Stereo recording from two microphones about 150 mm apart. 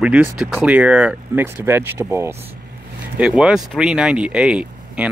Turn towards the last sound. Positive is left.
turn(degrees=-10)  # may be behind; listen again after turning